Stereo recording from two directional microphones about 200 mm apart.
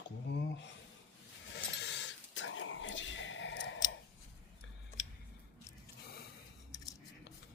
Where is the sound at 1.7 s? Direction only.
60° left (ahead or behind).